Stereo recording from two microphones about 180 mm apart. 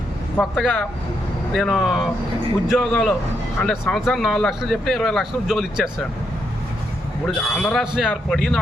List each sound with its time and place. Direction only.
0.3 s a man's voice: 10° left (ahead or behind)
7.3 s speech: 5° left (ahead or behind)